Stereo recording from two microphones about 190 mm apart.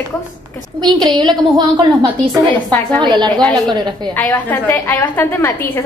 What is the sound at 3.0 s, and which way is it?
Speech, 25° right (ahead or behind).